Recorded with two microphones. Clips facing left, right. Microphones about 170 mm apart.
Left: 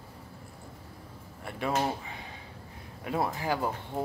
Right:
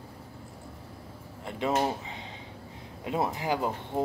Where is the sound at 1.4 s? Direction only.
20° right (ahead or behind).